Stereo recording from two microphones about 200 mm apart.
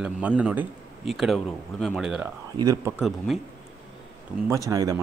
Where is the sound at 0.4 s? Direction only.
5° right (ahead or behind).